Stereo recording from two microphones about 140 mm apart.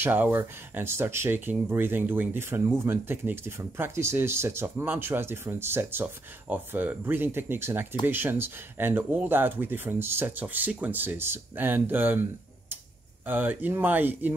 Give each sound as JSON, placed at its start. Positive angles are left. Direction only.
{"t": 0.0, "sound": "speech", "side_deg": -15}